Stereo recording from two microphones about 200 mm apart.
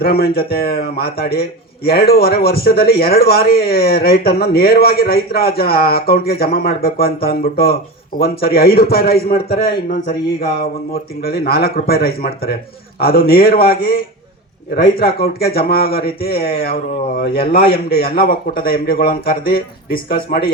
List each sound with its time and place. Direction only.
0.0 s a man's voice: 50° left (ahead or behind)
17.4 s a man's voice: 35° left (ahead or behind)
17.7 s a man's voice: 55° left (ahead or behind)